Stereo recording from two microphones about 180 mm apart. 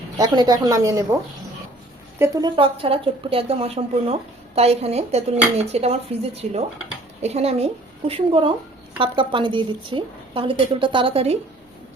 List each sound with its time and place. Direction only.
0.2 s a woman's voice: 20° right (ahead or behind)
2.1 s speech: 15° right (ahead or behind)
2.6 s a woman's voice: 30° right (ahead or behind)